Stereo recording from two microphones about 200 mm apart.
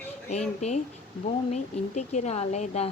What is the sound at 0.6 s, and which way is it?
A woman's voice, 35° left (ahead or behind).